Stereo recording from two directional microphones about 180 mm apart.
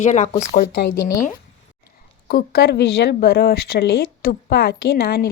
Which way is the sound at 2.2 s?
55° left (ahead or behind).